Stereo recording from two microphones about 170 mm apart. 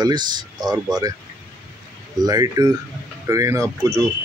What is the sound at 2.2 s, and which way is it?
Speech, 25° right (ahead or behind).